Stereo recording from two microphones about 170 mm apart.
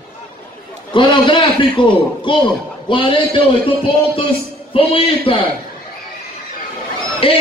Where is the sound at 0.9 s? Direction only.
30° left (ahead or behind).